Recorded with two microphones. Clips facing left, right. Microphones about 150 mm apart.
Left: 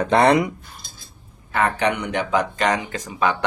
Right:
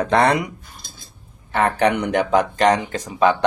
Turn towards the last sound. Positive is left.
turn(degrees=-25)  # may be behind; listen again after turning